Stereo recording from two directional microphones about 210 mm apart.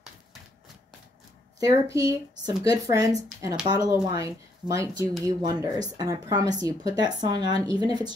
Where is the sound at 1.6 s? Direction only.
15° right (ahead or behind).